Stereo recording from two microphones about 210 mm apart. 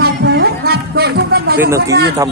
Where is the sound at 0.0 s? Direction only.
50° right (ahead or behind).